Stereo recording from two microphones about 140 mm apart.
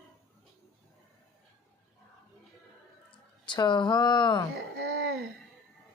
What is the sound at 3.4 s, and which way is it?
Speech, 35° left (ahead or behind).